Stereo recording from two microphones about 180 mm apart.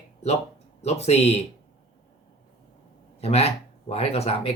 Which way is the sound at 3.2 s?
35° left (ahead or behind).